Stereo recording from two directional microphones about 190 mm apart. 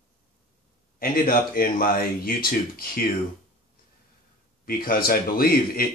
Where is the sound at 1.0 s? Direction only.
50° left (ahead or behind).